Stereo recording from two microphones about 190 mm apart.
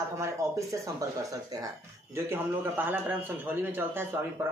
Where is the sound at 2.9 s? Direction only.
10° right (ahead or behind).